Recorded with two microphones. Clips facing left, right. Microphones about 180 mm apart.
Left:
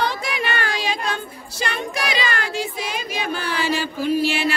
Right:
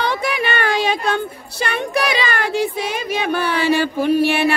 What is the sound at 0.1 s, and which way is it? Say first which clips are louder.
Speech: right 5 dB; 60° right (ahead or behind).